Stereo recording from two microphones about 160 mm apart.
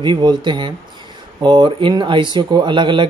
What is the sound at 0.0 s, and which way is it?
Speech, 30° right (ahead or behind).